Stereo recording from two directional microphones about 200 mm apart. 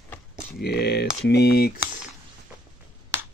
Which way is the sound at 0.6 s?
55° left (ahead or behind).